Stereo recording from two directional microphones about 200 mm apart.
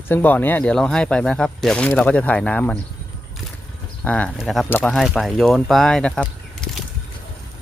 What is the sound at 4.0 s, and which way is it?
Speech, 5° left (ahead or behind).